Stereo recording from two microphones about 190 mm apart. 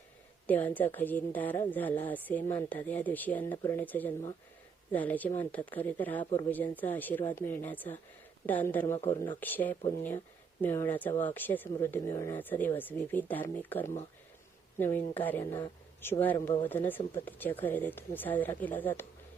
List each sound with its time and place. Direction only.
0.4 s a woman's voice: 10° left (ahead or behind)
9.4 s a woman's voice: 10° left (ahead or behind)